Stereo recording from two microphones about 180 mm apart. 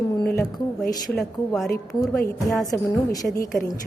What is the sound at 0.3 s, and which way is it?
Speech, centre (ahead or behind).